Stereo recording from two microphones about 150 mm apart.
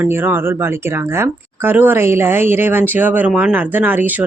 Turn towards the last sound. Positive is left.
turn(degrees=-10)  # may be behind; listen again after turning